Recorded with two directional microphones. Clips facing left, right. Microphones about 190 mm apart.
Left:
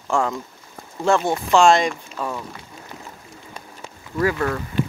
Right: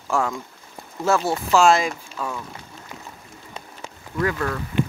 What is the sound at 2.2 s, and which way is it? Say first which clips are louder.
Speech: left 2 dB; 15° left (ahead or behind).